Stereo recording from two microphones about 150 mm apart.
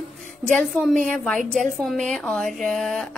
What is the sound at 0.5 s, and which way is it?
A woman's voice, centre (ahead or behind).